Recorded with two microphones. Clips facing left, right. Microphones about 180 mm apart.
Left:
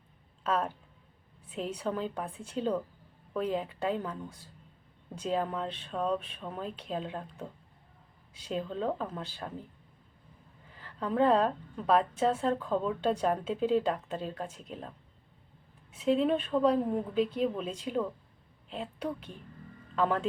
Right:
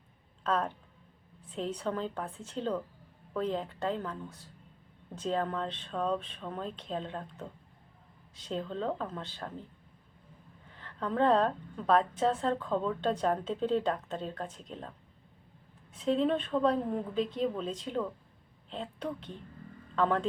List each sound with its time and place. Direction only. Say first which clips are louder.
0.4 s a woman's voice: even; 10° left (ahead or behind)
10.8 s a woman's voice: left 2 dB; 5° left (ahead or behind)